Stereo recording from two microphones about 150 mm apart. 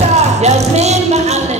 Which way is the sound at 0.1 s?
45° right (ahead or behind).